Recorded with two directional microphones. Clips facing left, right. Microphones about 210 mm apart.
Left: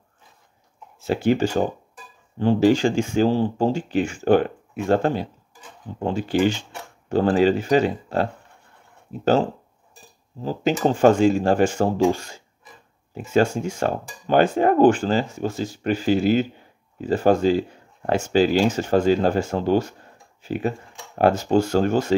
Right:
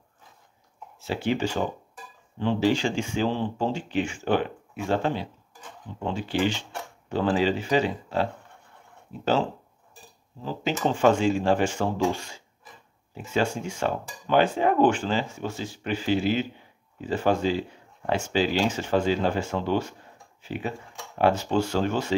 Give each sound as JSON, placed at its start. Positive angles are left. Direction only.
{"t": 0.9, "sound": "speech", "side_deg": 50}
{"t": 10.4, "sound": "speech", "side_deg": 40}